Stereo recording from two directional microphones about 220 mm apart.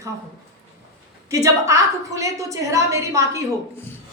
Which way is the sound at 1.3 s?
15° right (ahead or behind).